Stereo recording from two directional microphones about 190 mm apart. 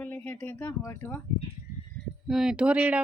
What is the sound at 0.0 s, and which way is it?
Speech, 10° left (ahead or behind).